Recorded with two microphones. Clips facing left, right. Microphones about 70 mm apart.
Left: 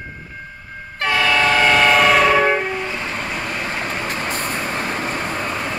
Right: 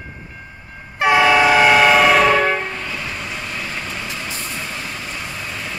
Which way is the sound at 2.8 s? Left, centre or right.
Left.